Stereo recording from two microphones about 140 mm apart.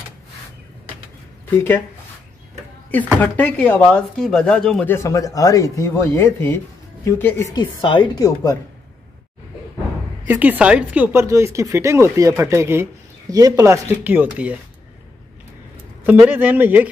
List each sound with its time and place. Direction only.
3.2 s speech: 10° left (ahead or behind)
4.9 s speech: 25° left (ahead or behind)
7.5 s speech: 35° left (ahead or behind)
10.2 s speech: 15° right (ahead or behind)
11.1 s speech: 20° right (ahead or behind)
16.1 s speech: 10° right (ahead or behind)